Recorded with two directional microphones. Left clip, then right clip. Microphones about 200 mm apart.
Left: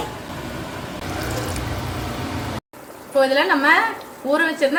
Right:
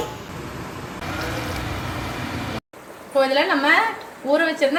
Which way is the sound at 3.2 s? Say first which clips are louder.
Left 2 dB; centre (ahead or behind).